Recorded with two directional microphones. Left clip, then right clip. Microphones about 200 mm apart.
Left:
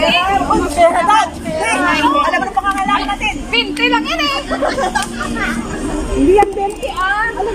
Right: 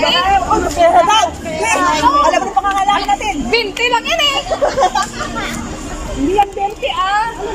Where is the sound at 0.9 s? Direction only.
10° right (ahead or behind).